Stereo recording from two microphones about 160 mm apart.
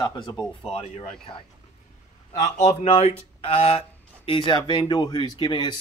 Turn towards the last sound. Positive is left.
turn(degrees=30)  # may be behind; listen again after turning